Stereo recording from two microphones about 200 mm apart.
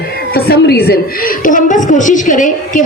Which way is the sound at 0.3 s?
50° left (ahead or behind).